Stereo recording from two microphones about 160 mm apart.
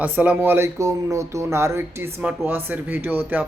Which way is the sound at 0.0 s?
10° right (ahead or behind).